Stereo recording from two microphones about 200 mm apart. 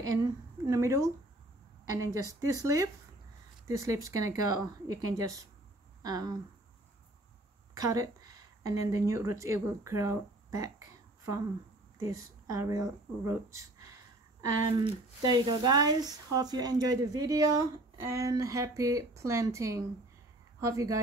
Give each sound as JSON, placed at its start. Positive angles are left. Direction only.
{"t": 0.0, "sound": "speech", "side_deg": -15}
{"t": 7.7, "sound": "a woman's voice", "side_deg": -15}